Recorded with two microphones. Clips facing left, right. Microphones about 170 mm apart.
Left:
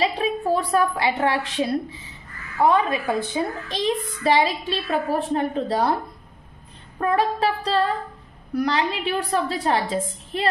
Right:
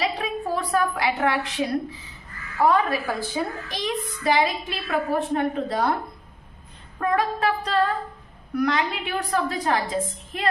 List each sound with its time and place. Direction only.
0.0 s a woman's voice: 30° left (ahead or behind)
7.0 s a woman's voice: 30° left (ahead or behind)